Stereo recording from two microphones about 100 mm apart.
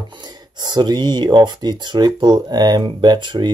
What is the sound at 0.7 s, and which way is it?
Speech, 45° right (ahead or behind).